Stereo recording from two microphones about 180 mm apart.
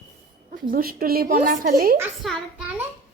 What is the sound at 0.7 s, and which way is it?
A woman's voice, 55° right (ahead or behind).